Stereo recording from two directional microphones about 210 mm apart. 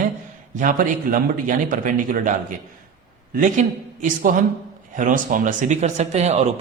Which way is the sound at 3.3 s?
40° right (ahead or behind).